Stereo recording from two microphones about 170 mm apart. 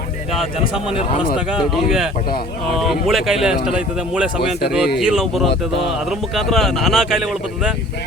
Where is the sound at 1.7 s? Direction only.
5° right (ahead or behind).